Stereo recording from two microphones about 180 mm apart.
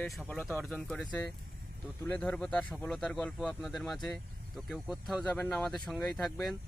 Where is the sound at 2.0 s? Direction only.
5° left (ahead or behind).